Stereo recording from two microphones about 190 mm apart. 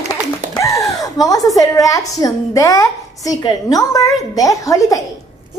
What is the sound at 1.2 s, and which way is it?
A woman's voice, 20° left (ahead or behind).